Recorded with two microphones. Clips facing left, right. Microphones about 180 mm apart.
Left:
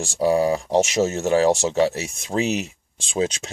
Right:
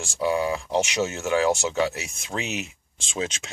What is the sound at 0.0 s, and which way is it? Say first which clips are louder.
Speech: left 5 dB; 40° left (ahead or behind).